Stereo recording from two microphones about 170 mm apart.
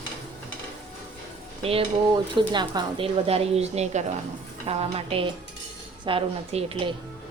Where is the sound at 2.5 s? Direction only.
25° right (ahead or behind).